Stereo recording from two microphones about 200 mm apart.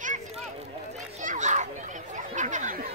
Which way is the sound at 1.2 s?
40° right (ahead or behind).